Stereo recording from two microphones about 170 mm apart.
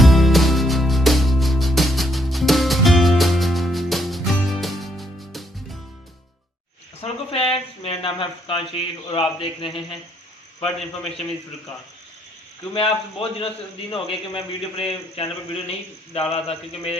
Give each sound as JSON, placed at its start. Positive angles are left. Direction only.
{"t": 0.0, "sound": "music", "side_deg": 0}
{"t": 7.0, "sound": "a sound", "side_deg": 35}
{"t": 7.5, "sound": "speech", "side_deg": 30}
{"t": 10.6, "sound": "a man's voice", "side_deg": 0}
{"t": 12.7, "sound": "a man's voice", "side_deg": 30}